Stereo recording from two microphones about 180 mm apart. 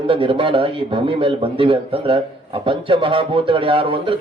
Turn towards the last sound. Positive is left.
turn(degrees=-30)  # may be behind; listen again after turning